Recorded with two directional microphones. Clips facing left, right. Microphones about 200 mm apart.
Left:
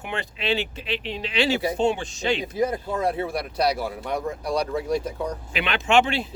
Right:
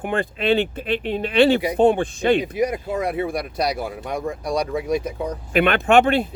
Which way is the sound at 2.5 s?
15° right (ahead or behind).